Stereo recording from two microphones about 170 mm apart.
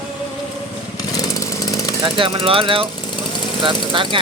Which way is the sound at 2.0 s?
30° right (ahead or behind).